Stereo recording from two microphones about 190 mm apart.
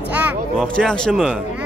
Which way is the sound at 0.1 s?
10° right (ahead or behind).